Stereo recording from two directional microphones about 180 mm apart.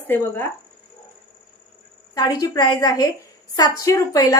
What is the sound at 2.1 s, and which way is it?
A woman's voice, 20° left (ahead or behind).